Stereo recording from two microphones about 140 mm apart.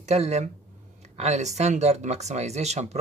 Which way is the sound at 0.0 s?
50° right (ahead or behind).